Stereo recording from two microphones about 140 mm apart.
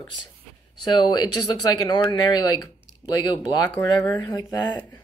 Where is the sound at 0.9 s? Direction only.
30° left (ahead or behind).